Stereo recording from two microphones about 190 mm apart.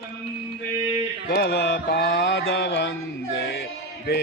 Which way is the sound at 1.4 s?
60° left (ahead or behind).